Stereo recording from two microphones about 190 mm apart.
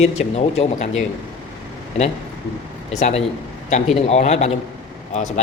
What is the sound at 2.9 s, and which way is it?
A man's voice, 40° left (ahead or behind).